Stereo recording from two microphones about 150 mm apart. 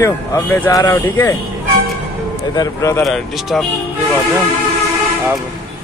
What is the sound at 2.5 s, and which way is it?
Speech, 25° left (ahead or behind).